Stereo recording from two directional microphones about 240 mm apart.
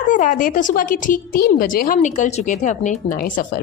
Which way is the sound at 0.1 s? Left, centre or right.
Left.